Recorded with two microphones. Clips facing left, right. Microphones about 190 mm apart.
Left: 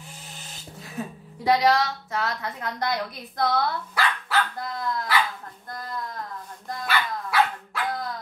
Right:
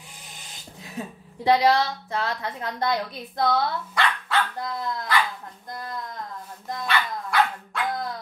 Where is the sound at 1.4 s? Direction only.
30° right (ahead or behind).